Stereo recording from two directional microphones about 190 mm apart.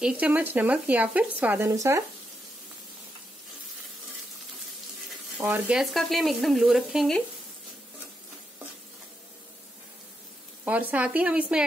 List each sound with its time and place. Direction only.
0.0 s speech: 5° right (ahead or behind)
5.4 s speech: 10° right (ahead or behind)
10.6 s speech: 10° right (ahead or behind)